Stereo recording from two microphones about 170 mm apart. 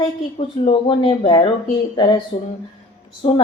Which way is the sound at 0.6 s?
35° left (ahead or behind).